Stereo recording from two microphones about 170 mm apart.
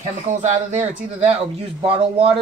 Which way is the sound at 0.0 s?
45° right (ahead or behind).